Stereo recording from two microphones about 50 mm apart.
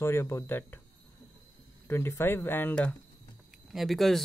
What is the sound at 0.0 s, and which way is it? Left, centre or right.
Speech, left.